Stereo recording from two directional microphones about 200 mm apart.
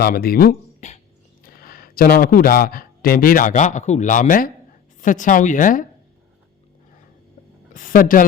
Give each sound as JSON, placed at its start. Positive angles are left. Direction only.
{"t": 0.0, "sound": "speech", "side_deg": 50}
{"t": 7.7, "sound": "speech", "side_deg": 40}